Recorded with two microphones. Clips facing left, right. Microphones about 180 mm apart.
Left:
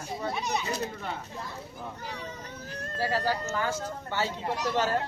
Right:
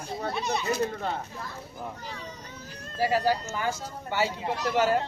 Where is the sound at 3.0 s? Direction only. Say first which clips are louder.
Right 4 dB; 15° right (ahead or behind).